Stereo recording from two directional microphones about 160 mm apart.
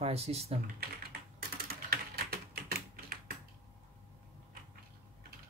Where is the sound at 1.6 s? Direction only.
75° right (ahead or behind).